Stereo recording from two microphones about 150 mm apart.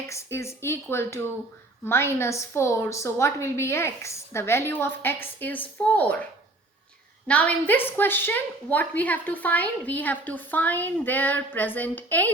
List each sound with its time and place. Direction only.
0.1 s a woman's voice: 20° left (ahead or behind)
7.3 s a woman's voice: 10° left (ahead or behind)